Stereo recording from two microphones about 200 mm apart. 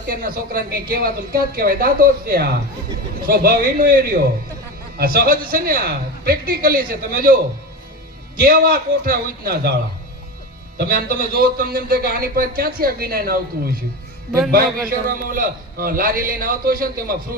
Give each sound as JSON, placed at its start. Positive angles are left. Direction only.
{"t": 0.1, "sound": "a man's voice", "side_deg": -45}
{"t": 8.4, "sound": "a man's voice", "side_deg": -50}
{"t": 10.8, "sound": "a man's voice", "side_deg": -50}
{"t": 14.8, "sound": "a man's voice", "side_deg": -45}